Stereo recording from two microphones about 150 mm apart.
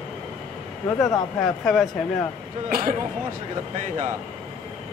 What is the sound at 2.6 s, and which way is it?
Speech, 60° right (ahead or behind).